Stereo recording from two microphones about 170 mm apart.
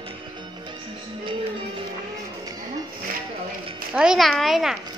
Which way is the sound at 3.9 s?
5° right (ahead or behind).